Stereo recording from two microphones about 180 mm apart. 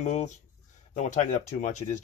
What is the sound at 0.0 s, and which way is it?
Speech, 40° left (ahead or behind).